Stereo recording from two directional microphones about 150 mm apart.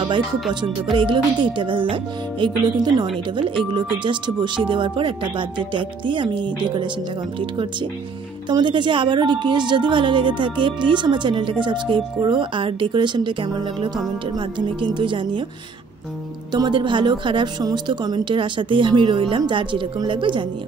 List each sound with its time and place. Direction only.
0.9 s speech: 35° right (ahead or behind)
8.5 s speech: 30° right (ahead or behind)
16.5 s speech: 30° right (ahead or behind)